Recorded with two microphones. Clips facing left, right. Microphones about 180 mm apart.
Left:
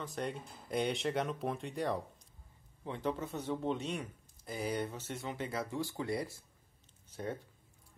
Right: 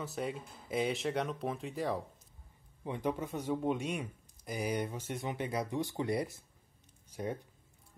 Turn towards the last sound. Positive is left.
turn(degrees=-15)  # may be behind; listen again after turning